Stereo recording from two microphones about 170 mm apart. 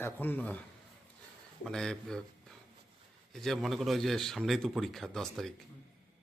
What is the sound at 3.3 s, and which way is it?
A man's voice, centre (ahead or behind).